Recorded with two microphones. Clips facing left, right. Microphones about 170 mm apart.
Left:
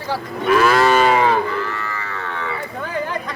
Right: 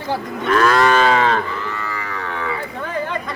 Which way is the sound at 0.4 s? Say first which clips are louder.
Left 1 dB; 10° left (ahead or behind).